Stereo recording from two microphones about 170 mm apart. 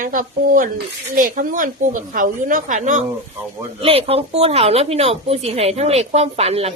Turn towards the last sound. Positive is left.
turn(degrees=-35)  # may be behind; listen again after turning